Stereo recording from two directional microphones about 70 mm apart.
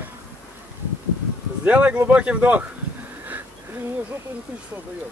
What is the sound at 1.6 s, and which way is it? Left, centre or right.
Speech, centre.